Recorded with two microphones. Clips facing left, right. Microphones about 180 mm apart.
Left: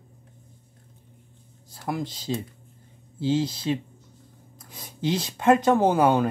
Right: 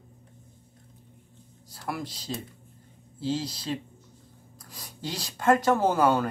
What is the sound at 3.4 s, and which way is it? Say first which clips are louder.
Speech: left 7 dB; 25° left (ahead or behind).